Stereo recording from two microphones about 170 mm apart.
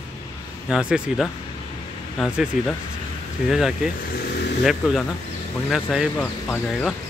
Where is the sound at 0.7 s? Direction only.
5° right (ahead or behind).